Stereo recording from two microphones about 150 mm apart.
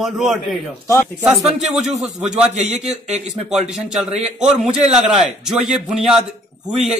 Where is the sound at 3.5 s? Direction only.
5° right (ahead or behind).